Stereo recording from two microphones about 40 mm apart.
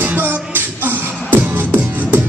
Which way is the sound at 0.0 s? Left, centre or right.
Right.